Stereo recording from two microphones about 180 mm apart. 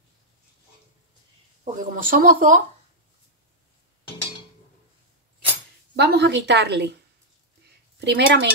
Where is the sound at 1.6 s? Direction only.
50° right (ahead or behind).